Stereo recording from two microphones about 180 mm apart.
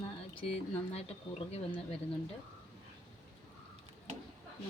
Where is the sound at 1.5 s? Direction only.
30° left (ahead or behind).